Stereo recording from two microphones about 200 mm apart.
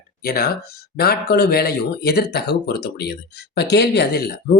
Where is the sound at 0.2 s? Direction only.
50° left (ahead or behind).